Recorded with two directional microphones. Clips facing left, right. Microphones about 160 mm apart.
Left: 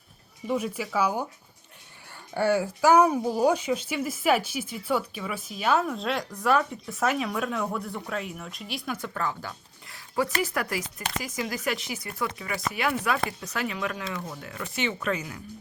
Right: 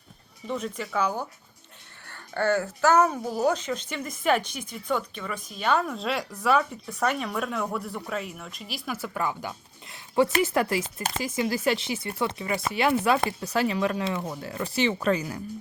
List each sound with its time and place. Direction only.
0.4 s speech: 10° left (ahead or behind); by 15.4 s 35° right (ahead or behind)